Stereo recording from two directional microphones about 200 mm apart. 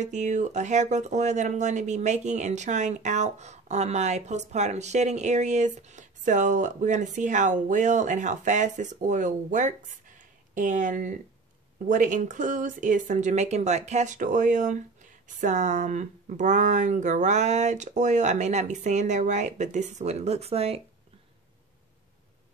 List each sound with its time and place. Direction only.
0.0 s speech: 35° right (ahead or behind)